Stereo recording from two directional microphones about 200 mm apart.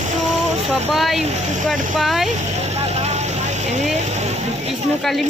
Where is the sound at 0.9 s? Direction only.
Centre (ahead or behind).